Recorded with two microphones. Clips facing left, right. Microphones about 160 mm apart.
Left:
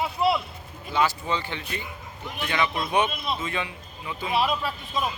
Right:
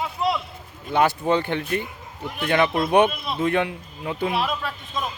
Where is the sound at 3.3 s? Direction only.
60° right (ahead or behind).